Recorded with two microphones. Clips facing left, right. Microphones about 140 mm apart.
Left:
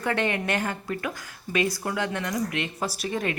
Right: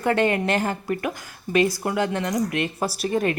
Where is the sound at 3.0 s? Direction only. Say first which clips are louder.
Right 7 dB; 35° right (ahead or behind).